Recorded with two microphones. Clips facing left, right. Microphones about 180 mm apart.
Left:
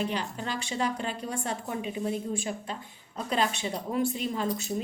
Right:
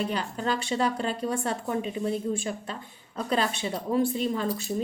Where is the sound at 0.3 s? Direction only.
35° right (ahead or behind).